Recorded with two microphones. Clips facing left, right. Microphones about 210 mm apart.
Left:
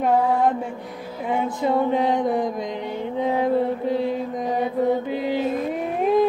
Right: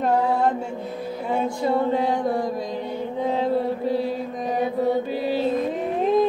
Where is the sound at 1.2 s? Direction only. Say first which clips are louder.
Left 1 dB; 20° left (ahead or behind).